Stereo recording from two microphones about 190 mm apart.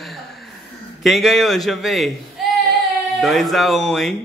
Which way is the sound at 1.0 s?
Centre (ahead or behind).